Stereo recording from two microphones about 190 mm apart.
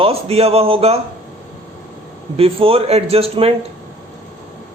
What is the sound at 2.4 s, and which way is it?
A man's voice, 30° right (ahead or behind).